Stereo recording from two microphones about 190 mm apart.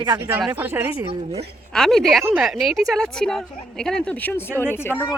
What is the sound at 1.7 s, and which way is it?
Speech, centre (ahead or behind).